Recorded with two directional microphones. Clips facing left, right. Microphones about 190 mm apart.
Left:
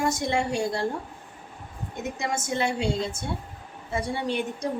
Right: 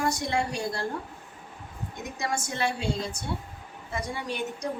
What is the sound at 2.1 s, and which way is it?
A woman's voice, 20° left (ahead or behind).